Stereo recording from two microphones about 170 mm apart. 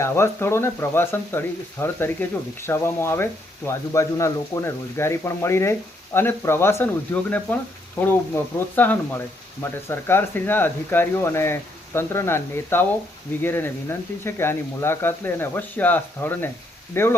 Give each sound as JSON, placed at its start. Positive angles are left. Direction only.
{"t": 0.0, "sound": "speech", "side_deg": 15}